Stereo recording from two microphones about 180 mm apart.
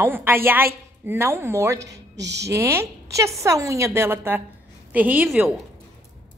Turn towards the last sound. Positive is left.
turn(degrees=-10)  # may be behind; listen again after turning